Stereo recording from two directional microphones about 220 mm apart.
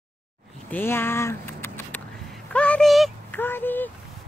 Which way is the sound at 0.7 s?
10° left (ahead or behind).